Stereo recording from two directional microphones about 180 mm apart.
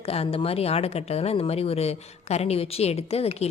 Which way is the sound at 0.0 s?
35° left (ahead or behind).